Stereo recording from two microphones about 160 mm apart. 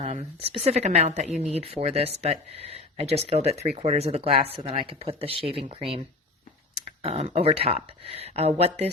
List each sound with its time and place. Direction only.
0.0 s a woman's voice: 45° right (ahead or behind)
7.0 s speech: 40° right (ahead or behind)